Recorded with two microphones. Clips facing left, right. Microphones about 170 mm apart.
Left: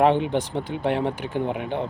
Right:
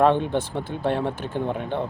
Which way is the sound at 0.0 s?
15° left (ahead or behind).